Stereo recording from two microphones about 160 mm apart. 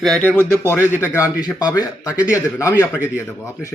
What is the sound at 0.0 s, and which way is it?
Speech, 5° left (ahead or behind).